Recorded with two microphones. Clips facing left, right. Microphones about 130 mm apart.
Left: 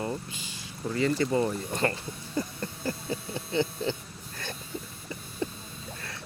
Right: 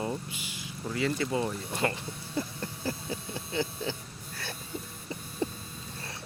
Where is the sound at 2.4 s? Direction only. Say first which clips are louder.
Left 2 dB; 5° right (ahead or behind).